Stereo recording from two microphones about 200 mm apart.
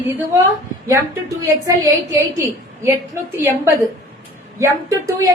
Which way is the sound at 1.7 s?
15° right (ahead or behind).